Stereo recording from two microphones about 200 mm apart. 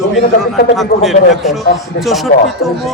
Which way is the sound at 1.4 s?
Centre (ahead or behind).